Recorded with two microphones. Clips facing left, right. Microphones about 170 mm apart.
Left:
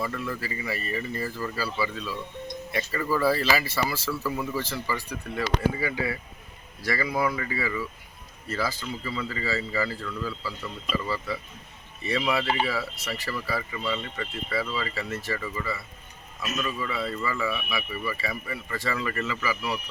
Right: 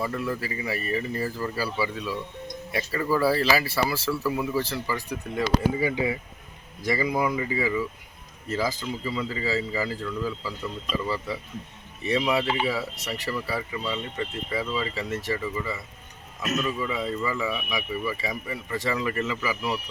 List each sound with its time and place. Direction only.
0.0 s speech: 10° right (ahead or behind)